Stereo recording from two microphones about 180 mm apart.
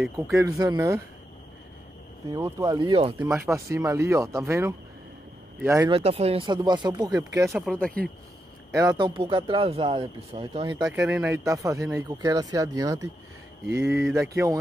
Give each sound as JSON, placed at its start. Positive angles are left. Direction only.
{"t": 0.0, "sound": "speech", "side_deg": -15}
{"t": 2.3, "sound": "speech", "side_deg": -20}
{"t": 3.3, "sound": "speech", "side_deg": -15}
{"t": 5.9, "sound": "speech", "side_deg": -35}
{"t": 7.4, "sound": "speech", "side_deg": 0}
{"t": 8.7, "sound": "speech", "side_deg": -20}
{"t": 10.9, "sound": "speech", "side_deg": -10}